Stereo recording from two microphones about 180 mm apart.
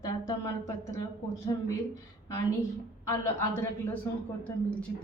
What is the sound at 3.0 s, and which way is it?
A woman's voice, 15° left (ahead or behind).